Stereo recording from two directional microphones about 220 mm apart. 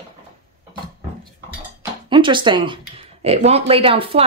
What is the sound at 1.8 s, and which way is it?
Speech, 20° right (ahead or behind).